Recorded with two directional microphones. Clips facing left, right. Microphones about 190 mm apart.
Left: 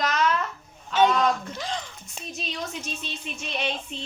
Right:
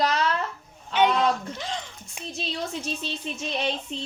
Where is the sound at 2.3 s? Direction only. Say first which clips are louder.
Right 2 dB; 30° right (ahead or behind).